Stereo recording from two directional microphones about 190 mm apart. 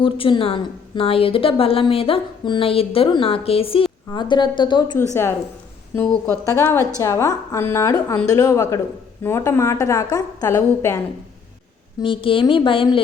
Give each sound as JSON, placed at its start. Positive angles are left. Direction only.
{"t": 0.0, "sound": "a woman's voice", "side_deg": 25}
{"t": 5.9, "sound": "a woman's voice", "side_deg": 10}
{"t": 11.9, "sound": "a woman's voice", "side_deg": 25}